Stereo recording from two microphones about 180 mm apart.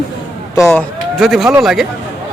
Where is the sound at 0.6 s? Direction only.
Centre (ahead or behind).